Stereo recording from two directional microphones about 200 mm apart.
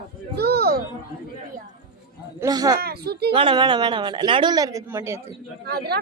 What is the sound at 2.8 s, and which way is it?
Speech, 50° right (ahead or behind).